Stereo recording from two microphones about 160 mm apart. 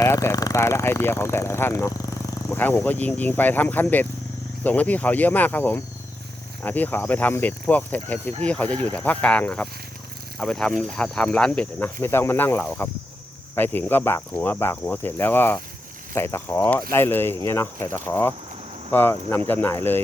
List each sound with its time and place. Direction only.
0.0 s speech: 20° left (ahead or behind)